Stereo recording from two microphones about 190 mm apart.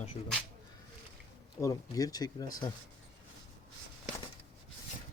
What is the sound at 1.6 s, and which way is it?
Speech, 20° left (ahead or behind).